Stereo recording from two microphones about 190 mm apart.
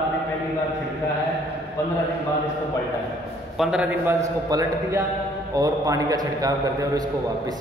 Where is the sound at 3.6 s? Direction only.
5° right (ahead or behind); by 7.5 s 20° right (ahead or behind).